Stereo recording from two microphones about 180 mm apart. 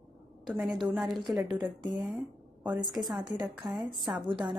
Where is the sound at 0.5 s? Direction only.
Centre (ahead or behind).